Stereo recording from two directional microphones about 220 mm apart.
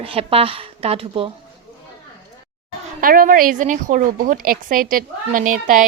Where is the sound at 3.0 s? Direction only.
40° right (ahead or behind).